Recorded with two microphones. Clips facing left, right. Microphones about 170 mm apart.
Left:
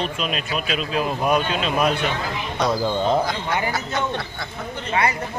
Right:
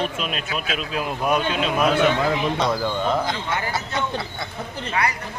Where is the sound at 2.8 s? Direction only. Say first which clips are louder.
Left 2 dB; 30° left (ahead or behind).